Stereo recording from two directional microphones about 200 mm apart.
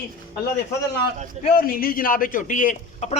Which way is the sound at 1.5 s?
45° left (ahead or behind).